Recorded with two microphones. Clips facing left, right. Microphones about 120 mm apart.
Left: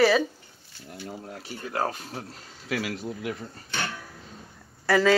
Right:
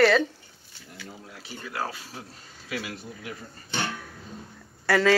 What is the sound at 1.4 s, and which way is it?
Speech, 45° left (ahead or behind).